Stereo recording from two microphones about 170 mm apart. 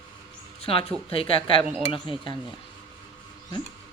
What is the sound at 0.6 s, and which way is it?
Speech, 35° left (ahead or behind).